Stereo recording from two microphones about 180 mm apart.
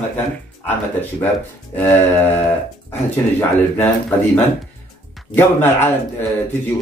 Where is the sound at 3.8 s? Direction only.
5° left (ahead or behind).